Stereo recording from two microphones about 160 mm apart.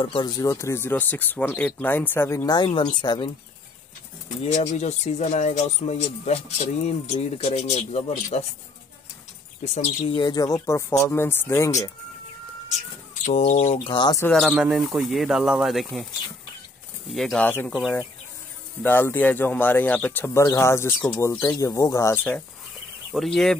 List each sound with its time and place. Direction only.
0.0 s speech: 30° left (ahead or behind)
4.5 s speech: 45° left (ahead or behind)
9.8 s speech: 40° left (ahead or behind)
10.2 s speech: 25° left (ahead or behind)
13.2 s speech: 45° left (ahead or behind)
13.8 s speech: 30° left (ahead or behind)
14.3 s speech: centre (ahead or behind)
17.1 s speech: centre (ahead or behind)
17.5 s speech: 10° left (ahead or behind)
18.8 s speech: 15° left (ahead or behind)